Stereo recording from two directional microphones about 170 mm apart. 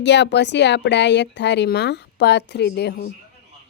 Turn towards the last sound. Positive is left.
turn(degrees=75)  # may be behind; listen again after turning